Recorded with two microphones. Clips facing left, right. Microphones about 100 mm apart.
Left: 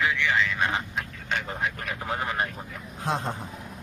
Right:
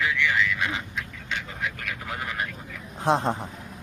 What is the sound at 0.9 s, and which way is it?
Speech, 50° left (ahead or behind).